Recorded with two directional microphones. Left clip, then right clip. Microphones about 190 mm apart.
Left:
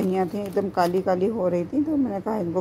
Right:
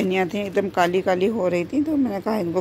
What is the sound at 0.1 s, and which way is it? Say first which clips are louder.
Speech: right 3 dB; 10° right (ahead or behind).